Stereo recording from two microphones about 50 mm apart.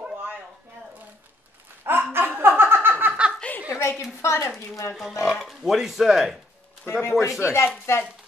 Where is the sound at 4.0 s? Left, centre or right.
Left.